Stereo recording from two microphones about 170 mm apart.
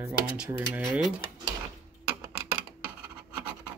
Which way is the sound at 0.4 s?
10° right (ahead or behind).